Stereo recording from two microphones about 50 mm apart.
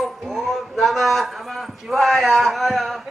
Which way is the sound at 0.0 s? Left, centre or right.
Centre.